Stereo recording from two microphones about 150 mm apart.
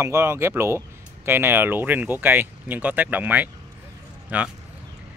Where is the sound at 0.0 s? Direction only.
20° right (ahead or behind).